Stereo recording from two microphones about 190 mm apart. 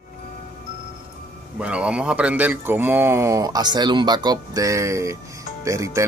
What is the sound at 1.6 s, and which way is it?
Speech, 5° right (ahead or behind).